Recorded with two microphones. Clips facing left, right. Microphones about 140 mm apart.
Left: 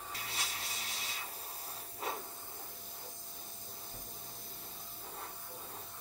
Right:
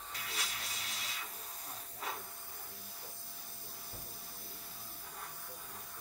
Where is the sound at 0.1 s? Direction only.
30° left (ahead or behind).